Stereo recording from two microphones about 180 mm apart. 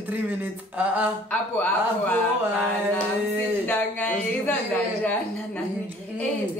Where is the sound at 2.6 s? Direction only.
Centre (ahead or behind).